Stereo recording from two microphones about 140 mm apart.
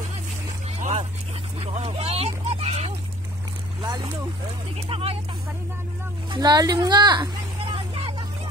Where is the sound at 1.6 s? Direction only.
45° right (ahead or behind).